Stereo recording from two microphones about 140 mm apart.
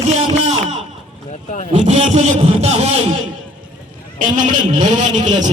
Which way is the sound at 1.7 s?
55° right (ahead or behind).